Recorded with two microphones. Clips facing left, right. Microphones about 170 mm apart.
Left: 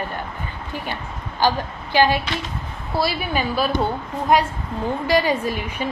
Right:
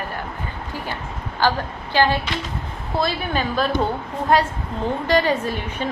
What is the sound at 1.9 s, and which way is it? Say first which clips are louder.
A woman's voice: left 1 dB; 15° left (ahead or behind).